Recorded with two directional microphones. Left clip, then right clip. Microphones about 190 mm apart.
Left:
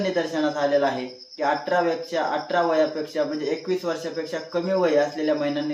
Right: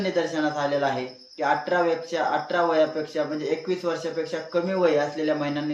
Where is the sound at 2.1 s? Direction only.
10° left (ahead or behind).